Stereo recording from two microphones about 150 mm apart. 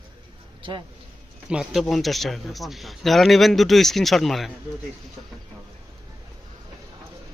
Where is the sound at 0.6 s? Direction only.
35° right (ahead or behind).